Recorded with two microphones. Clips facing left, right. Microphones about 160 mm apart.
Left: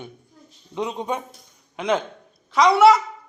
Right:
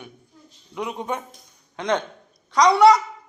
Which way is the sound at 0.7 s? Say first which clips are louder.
Left 2 dB; 20° left (ahead or behind).